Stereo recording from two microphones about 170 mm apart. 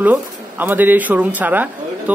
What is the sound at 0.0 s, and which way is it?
Speech, 10° right (ahead or behind).